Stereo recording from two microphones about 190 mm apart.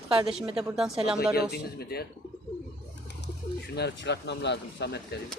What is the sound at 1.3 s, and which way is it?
Speech, 55° left (ahead or behind).